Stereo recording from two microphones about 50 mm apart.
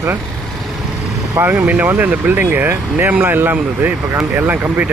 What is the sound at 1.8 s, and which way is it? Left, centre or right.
A man's voice, right.